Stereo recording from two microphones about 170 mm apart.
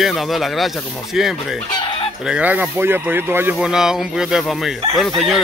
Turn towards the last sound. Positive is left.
turn(degrees=0)  # may be behind; listen again after turning